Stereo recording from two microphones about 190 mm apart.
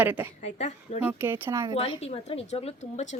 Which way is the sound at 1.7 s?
30° left (ahead or behind).